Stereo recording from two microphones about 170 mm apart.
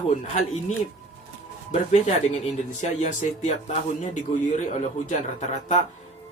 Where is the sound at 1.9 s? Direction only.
40° left (ahead or behind).